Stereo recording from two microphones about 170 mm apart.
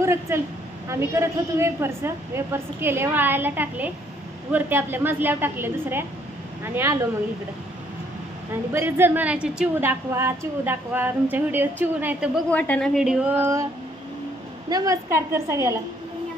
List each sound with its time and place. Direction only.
0.0 s a woman's voice: 15° right (ahead or behind)
8.7 s a woman's voice: 15° right (ahead or behind)
12.4 s a woman's voice: 10° left (ahead or behind); by 13.7 s 15° right (ahead or behind)
14.7 s a woman's voice: 20° right (ahead or behind)